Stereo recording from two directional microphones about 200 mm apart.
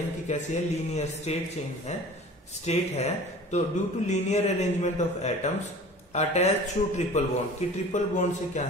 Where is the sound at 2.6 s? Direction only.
35° left (ahead or behind).